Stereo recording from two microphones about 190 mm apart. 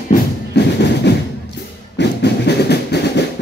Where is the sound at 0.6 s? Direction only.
60° left (ahead or behind).